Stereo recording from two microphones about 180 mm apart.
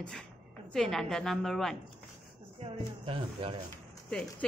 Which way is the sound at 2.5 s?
30° right (ahead or behind).